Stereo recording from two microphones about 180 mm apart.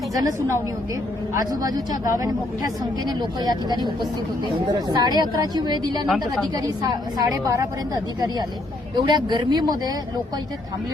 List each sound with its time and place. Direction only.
0.1 s a woman's voice: 20° right (ahead or behind)
3.2 s a woman's voice: 20° right (ahead or behind)
6.1 s a woman's voice: centre (ahead or behind)
6.8 s a woman's voice: 20° right (ahead or behind)
9.0 s a woman's voice: 25° right (ahead or behind)